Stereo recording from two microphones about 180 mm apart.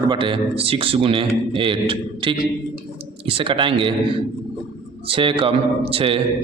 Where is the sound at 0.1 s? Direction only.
30° right (ahead or behind).